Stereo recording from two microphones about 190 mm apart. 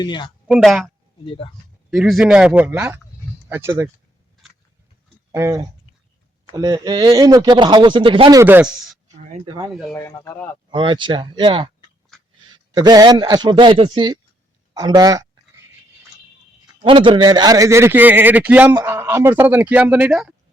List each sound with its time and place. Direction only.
0.0 s speech: 25° left (ahead or behind)
0.4 s speech: centre (ahead or behind)
1.2 s speech: 30° left (ahead or behind)
1.9 s a man's voice: centre (ahead or behind)
5.3 s a man's voice: 15° right (ahead or behind)
8.4 s a man's voice: 10° right (ahead or behind)
10.0 s speech: 15° left (ahead or behind)
10.7 s speech: 25° right (ahead or behind)
14.7 s a sound: 20° right (ahead or behind)
16.8 s a man's voice: 25° right (ahead or behind); by 20.3 s 5° right (ahead or behind)